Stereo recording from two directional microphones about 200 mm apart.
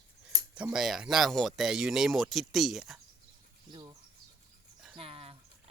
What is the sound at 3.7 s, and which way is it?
Speech, 20° right (ahead or behind).